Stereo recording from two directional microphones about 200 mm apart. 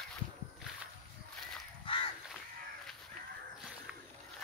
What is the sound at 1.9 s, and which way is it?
Crow, 25° left (ahead or behind).